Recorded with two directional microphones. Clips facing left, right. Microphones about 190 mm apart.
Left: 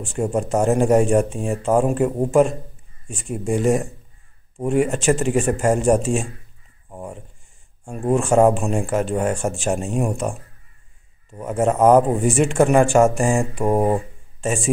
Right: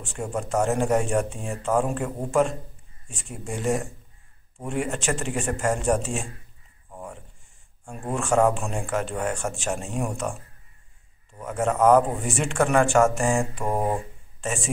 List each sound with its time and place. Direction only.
0.0 s speech: 30° left (ahead or behind)
6.9 s a sound: 20° left (ahead or behind)
7.8 s speech: 20° left (ahead or behind)
11.3 s speech: 20° left (ahead or behind)